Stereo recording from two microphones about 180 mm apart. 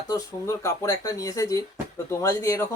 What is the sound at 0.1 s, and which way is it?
A man's voice, 20° left (ahead or behind).